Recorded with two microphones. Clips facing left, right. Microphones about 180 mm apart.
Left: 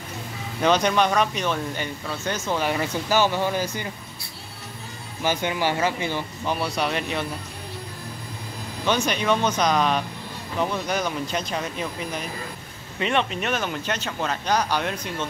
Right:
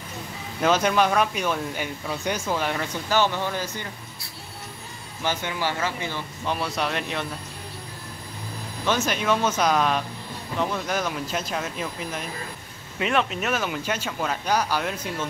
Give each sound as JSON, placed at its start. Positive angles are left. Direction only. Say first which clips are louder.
{"t": 0.6, "sound": "speech", "louder": "left 1 dB", "side_deg": -5}
{"t": 2.6, "sound": "speech", "louder": "left 3 dB", "side_deg": 5}
{"t": 5.2, "sound": "speech", "louder": "left 3 dB", "side_deg": 15}
{"t": 6.4, "sound": "speech", "louder": "left 1 dB", "side_deg": 0}
{"t": 8.8, "sound": "speech", "louder": "left 1 dB", "side_deg": 0}